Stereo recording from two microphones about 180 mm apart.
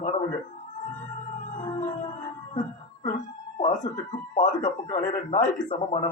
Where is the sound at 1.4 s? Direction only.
45° left (ahead or behind).